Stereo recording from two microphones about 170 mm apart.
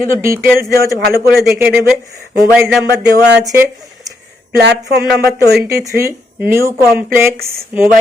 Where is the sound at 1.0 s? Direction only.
65° right (ahead or behind).